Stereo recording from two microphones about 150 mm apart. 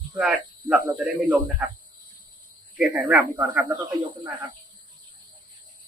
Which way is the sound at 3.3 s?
10° right (ahead or behind).